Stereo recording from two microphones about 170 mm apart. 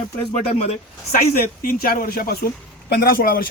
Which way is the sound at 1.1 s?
60° left (ahead or behind).